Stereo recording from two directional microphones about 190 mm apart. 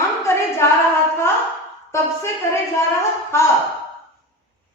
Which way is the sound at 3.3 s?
15° left (ahead or behind).